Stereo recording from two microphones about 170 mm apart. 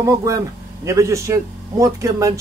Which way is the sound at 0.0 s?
20° right (ahead or behind).